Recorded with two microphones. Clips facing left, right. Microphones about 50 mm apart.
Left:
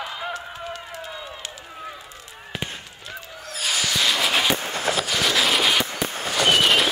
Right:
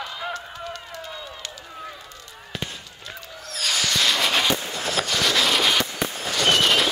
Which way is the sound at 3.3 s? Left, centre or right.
Centre.